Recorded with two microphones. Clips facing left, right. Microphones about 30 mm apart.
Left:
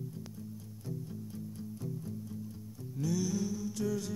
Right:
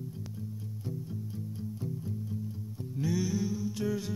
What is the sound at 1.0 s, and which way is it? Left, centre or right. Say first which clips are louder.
Music: right 3 dB; centre.